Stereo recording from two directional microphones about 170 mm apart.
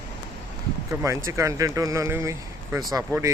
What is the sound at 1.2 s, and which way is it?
Speech, 20° right (ahead or behind).